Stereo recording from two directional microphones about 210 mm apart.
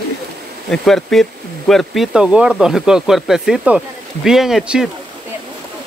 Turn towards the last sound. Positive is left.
turn(degrees=-5)  # may be behind; listen again after turning